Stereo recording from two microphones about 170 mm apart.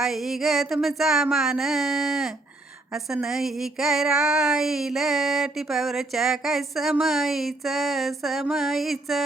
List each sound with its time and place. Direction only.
0.0 s child singing: centre (ahead or behind)